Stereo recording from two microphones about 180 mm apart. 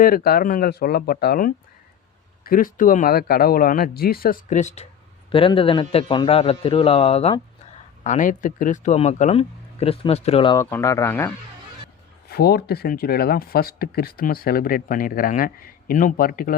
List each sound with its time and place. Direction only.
0.0 s a man's voice: 55° left (ahead or behind); by 7.4 s 35° left (ahead or behind)
8.0 s a man's voice: 45° left (ahead or behind); by 10.6 s 30° left (ahead or behind)
10.6 s speech: 15° left (ahead or behind)
12.3 s speech: 60° left (ahead or behind)